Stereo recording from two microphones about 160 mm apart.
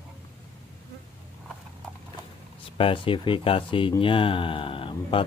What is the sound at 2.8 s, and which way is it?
Speech, 35° left (ahead or behind).